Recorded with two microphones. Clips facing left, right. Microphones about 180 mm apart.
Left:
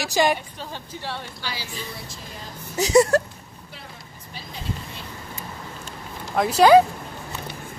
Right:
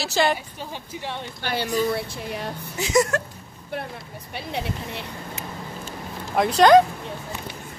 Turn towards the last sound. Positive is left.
turn(degrees=5)  # may be behind; listen again after turning